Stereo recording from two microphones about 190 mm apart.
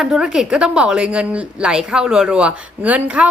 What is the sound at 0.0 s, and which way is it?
A woman's voice, 5° right (ahead or behind).